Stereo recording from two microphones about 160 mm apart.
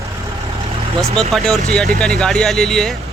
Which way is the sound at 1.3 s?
Centre (ahead or behind).